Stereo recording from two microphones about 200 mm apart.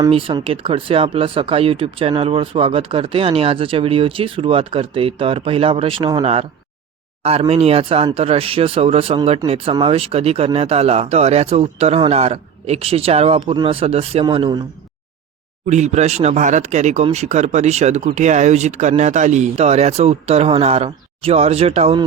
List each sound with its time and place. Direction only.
0.1 s speech: 25° right (ahead or behind)
15.6 s speech: 35° right (ahead or behind)